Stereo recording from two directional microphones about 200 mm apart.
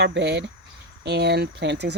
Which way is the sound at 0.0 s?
60° right (ahead or behind).